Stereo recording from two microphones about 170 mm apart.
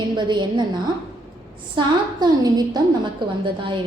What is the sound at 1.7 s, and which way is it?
A woman's voice, 25° right (ahead or behind).